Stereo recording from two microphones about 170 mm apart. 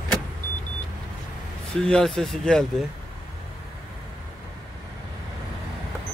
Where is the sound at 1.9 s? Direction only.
Centre (ahead or behind).